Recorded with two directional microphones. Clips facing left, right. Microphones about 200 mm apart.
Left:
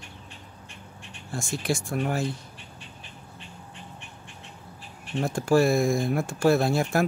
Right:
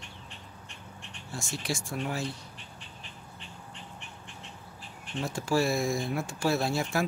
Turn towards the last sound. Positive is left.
turn(degrees=55)  # may be behind; listen again after turning